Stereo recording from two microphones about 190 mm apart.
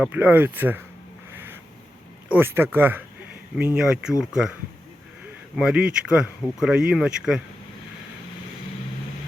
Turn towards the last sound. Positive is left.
turn(degrees=-5)  # may be behind; listen again after turning